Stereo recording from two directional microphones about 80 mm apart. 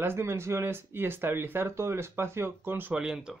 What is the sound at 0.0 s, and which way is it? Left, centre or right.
Speech, right.